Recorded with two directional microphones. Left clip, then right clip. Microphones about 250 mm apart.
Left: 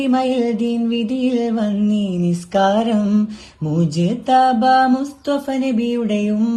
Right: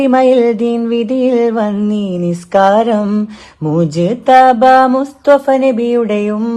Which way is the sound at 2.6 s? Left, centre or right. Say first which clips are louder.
Right 7 dB; right.